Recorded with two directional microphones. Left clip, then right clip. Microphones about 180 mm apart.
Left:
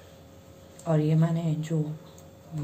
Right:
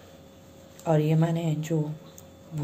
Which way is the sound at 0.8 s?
30° right (ahead or behind).